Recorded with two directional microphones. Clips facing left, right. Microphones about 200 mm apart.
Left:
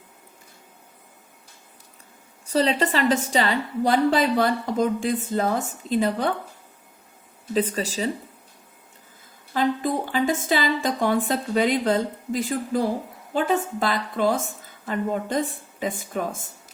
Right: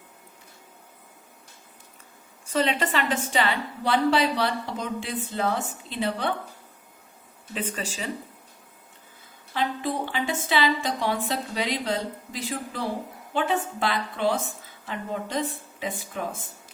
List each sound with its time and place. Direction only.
2.5 s a woman's voice: 35° left (ahead or behind)
7.5 s speech: 40° left (ahead or behind)
9.5 s a woman's voice: 45° left (ahead or behind)